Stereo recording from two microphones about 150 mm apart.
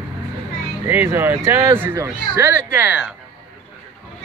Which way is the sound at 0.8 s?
15° right (ahead or behind).